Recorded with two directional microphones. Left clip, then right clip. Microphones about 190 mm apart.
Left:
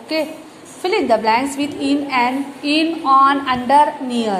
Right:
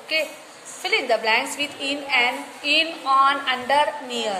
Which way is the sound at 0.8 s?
10° left (ahead or behind).